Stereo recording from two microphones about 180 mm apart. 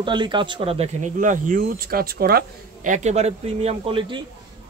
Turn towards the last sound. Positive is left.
turn(degrees=-30)  # may be behind; listen again after turning